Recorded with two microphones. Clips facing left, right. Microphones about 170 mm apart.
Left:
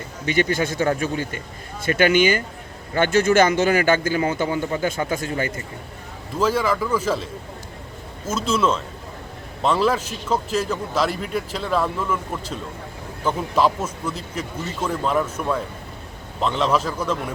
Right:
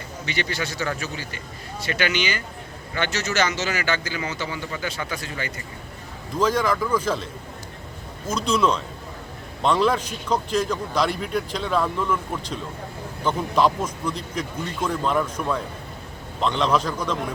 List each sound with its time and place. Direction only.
0.3 s a man's voice: 50° left (ahead or behind)
6.4 s speech: 5° left (ahead or behind)
8.3 s speech: 5° left (ahead or behind)